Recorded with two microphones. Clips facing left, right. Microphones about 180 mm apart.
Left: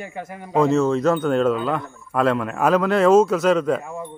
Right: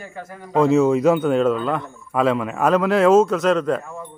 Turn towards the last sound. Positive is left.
turn(degrees=10)  # may be behind; listen again after turning